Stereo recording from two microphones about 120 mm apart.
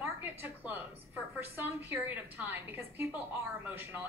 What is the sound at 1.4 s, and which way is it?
A woman's voice, 15° right (ahead or behind).